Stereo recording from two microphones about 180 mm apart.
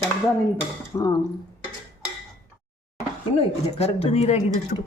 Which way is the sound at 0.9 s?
20° left (ahead or behind).